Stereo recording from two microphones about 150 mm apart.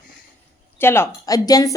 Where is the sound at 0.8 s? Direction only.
15° left (ahead or behind).